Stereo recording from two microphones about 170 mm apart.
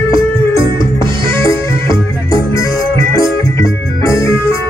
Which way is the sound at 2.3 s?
20° left (ahead or behind).